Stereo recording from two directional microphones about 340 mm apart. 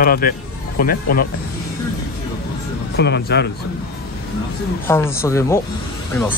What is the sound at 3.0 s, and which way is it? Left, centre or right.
Speech, left.